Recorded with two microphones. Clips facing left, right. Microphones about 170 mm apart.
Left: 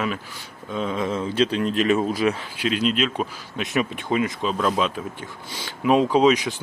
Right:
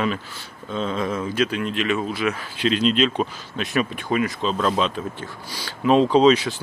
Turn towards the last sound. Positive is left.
turn(degrees=15)  # may be behind; listen again after turning